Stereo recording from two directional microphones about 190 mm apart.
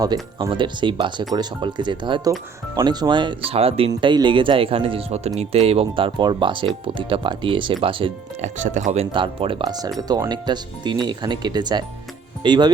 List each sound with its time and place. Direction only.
0.0 s speech: 20° right (ahead or behind)
8.6 s speech: 40° right (ahead or behind); by 12.7 s 25° right (ahead or behind)